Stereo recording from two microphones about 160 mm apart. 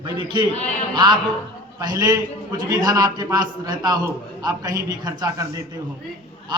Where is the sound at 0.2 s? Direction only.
30° right (ahead or behind).